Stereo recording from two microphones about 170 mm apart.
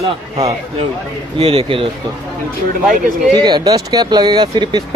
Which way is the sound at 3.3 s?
25° right (ahead or behind).